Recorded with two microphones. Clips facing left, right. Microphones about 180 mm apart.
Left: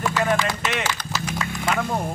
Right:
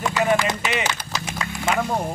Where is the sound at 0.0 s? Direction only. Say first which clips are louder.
Right 2 dB; centre (ahead or behind).